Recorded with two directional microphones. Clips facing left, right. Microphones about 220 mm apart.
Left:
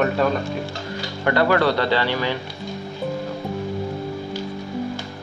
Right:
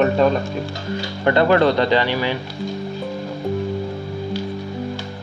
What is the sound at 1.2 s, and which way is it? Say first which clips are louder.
Speech: right 3 dB; 25° right (ahead or behind).